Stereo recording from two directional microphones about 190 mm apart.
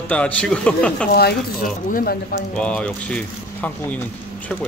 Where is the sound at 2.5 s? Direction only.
5° left (ahead or behind).